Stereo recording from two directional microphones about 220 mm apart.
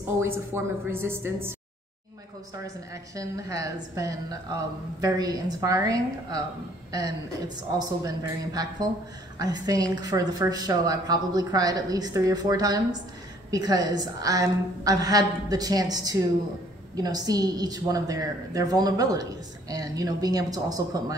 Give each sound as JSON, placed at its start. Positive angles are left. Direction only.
{"t": 0.2, "sound": "speech", "side_deg": -10}
{"t": 2.6, "sound": "speech", "side_deg": -15}